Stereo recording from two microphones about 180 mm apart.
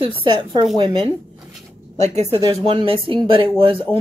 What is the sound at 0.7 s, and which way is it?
Speech, 25° right (ahead or behind).